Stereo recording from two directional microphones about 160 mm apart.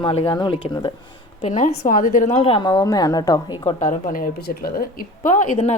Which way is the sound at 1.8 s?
60° left (ahead or behind).